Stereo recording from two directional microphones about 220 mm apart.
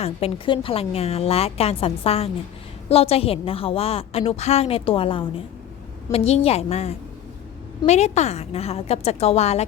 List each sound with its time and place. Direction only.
0.0 s a woman's voice: 25° left (ahead or behind)